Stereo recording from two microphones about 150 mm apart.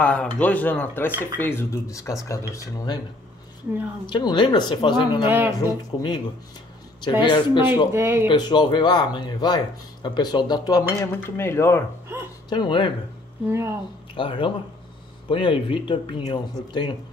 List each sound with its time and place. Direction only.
0.0 s speech: 5° left (ahead or behind); by 3.0 s 25° left (ahead or behind)
4.0 s speech: 30° left (ahead or behind)
7.9 s speech: 15° right (ahead or behind)
8.3 s speech: 30° left (ahead or behind)
12.4 s speech: 30° left (ahead or behind)
13.5 s speech: 20° right (ahead or behind)
14.1 s speech: 35° left (ahead or behind)